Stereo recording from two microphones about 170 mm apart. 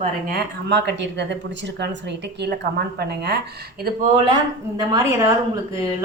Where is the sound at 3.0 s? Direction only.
70° right (ahead or behind).